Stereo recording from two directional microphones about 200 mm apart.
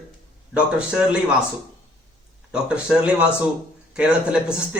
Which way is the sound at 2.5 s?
5° right (ahead or behind).